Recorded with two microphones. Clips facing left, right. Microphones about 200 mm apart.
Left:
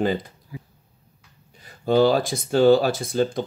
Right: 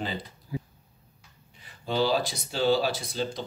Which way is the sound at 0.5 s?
25° right (ahead or behind).